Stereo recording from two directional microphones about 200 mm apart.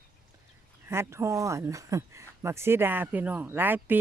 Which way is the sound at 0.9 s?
15° right (ahead or behind).